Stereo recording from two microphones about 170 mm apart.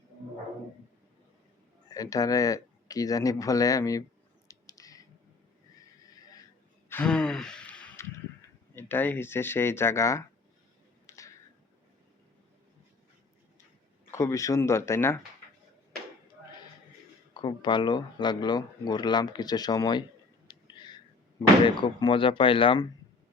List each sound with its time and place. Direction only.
1.9 s speech: 20° left (ahead or behind)
4.4 s a sound: 20° left (ahead or behind)
6.0 s neigh: 20° left (ahead or behind)
6.8 s sigh: 10° left (ahead or behind)
8.7 s speech: 15° left (ahead or behind)
11.0 s a sound: 20° left (ahead or behind)
14.1 s speech: 15° left (ahead or behind)
17.3 s speech: 25° left (ahead or behind)
20.5 s whispering: 25° left (ahead or behind)
21.8 s speech: 30° left (ahead or behind)